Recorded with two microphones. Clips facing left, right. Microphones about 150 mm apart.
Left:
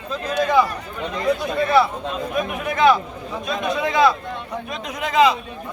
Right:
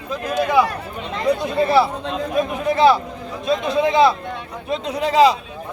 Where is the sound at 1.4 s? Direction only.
30° right (ahead or behind).